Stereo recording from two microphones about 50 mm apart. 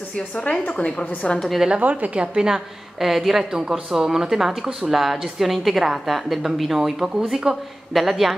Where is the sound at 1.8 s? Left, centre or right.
Right.